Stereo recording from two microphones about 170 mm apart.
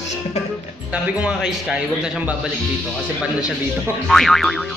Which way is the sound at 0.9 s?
5° right (ahead or behind).